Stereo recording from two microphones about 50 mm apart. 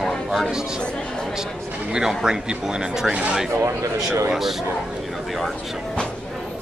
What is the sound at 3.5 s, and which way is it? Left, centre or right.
Speech, right.